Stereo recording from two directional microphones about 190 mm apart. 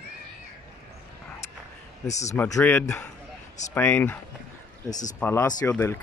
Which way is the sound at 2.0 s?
35° left (ahead or behind).